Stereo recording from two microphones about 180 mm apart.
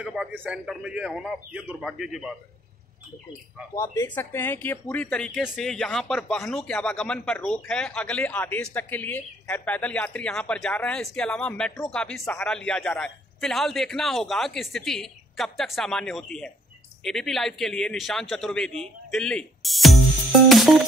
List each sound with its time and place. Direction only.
0.0 s speech: 5° right (ahead or behind)
3.7 s speech: 15° left (ahead or behind); by 20.8 s centre (ahead or behind)